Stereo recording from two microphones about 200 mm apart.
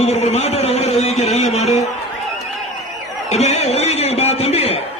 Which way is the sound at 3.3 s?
35° left (ahead or behind).